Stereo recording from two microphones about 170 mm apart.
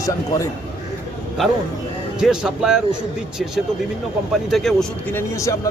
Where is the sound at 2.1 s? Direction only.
5° right (ahead or behind).